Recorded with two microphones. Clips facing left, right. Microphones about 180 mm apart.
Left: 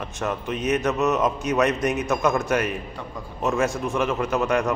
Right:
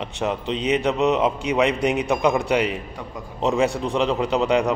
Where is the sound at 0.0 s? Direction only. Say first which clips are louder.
Right 3 dB; 20° right (ahead or behind).